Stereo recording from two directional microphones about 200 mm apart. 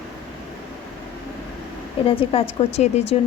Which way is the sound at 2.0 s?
25° left (ahead or behind).